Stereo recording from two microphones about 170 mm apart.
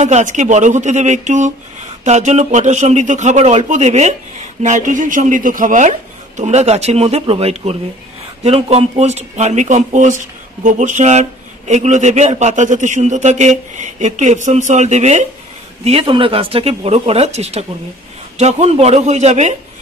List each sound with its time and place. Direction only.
0.0 s speech: 45° right (ahead or behind)